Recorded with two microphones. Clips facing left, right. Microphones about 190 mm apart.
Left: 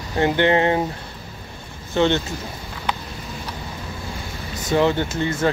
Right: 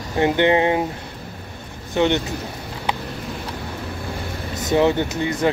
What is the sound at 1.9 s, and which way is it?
Speech, 15° right (ahead or behind).